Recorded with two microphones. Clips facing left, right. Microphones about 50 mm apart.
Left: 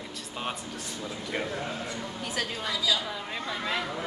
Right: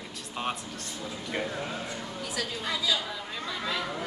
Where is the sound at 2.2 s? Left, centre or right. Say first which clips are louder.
Left 2 dB; left.